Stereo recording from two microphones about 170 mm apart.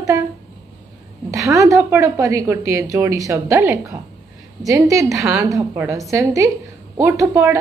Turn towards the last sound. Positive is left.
turn(degrees=-15)  # may be behind; listen again after turning